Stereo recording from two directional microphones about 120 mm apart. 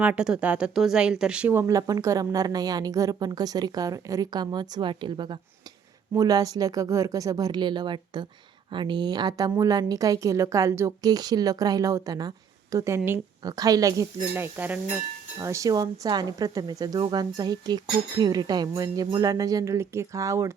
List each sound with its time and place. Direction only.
0.0 s speech: 10° right (ahead or behind)
1.6 s speech: 30° right (ahead or behind)
15.4 s speech: 25° right (ahead or behind)